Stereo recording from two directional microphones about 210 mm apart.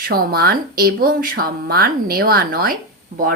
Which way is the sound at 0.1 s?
45° right (ahead or behind).